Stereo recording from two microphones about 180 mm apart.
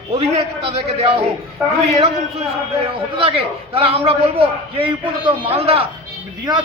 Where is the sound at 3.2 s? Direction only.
30° right (ahead or behind).